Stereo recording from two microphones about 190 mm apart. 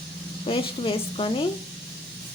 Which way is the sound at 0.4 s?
30° left (ahead or behind).